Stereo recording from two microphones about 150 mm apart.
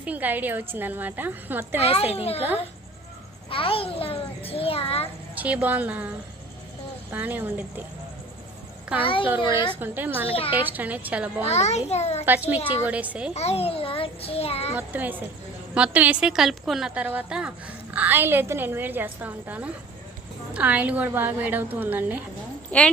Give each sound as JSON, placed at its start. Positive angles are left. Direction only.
{"t": 0.0, "sound": "a woman's voice", "side_deg": -10}
{"t": 1.8, "sound": "a child's voice", "side_deg": 40}
{"t": 3.5, "sound": "a child's voice", "side_deg": 35}
{"t": 5.3, "sound": "a woman's voice", "side_deg": -10}
{"t": 7.1, "sound": "a woman's voice", "side_deg": -10}
{"t": 9.0, "sound": "a child's voice", "side_deg": 35}
{"t": 9.8, "sound": "a woman's voice", "side_deg": -10}
{"t": 10.2, "sound": "a child's voice", "side_deg": 40}
{"t": 10.5, "sound": "a woman's voice", "side_deg": -10}
{"t": 11.4, "sound": "a child's voice", "side_deg": 45}
{"t": 12.2, "sound": "a woman's voice", "side_deg": -10}
{"t": 13.3, "sound": "a child's voice", "side_deg": 45}
{"t": 14.8, "sound": "a woman's voice", "side_deg": -10}
{"t": 22.7, "sound": "a woman's voice", "side_deg": 10}